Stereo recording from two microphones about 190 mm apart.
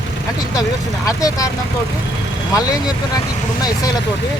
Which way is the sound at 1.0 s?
20° left (ahead or behind).